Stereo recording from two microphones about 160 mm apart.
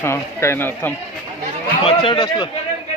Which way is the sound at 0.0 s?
15° left (ahead or behind).